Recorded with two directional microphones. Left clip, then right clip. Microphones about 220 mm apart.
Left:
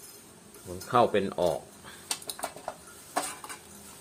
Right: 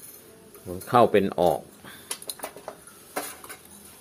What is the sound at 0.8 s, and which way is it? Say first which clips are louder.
Speech: right 5 dB; 35° right (ahead or behind).